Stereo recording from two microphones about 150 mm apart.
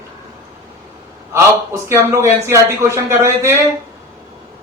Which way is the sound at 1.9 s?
15° right (ahead or behind).